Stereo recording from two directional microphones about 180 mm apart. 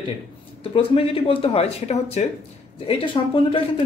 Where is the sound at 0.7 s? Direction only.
30° left (ahead or behind).